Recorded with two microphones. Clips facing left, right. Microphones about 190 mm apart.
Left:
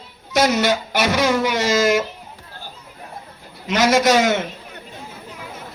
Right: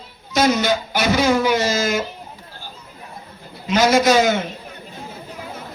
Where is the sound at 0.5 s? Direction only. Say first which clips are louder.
Left 1 dB; 75° left (ahead or behind).